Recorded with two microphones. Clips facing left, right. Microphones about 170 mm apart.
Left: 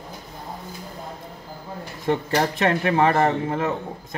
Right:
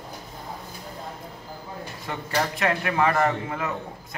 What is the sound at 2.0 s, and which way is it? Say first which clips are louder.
Speech: left 6 dB; 30° left (ahead or behind).